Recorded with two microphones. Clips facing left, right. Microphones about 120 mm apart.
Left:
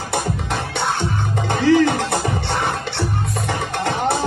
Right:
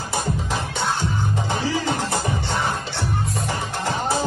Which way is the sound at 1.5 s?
65° left (ahead or behind).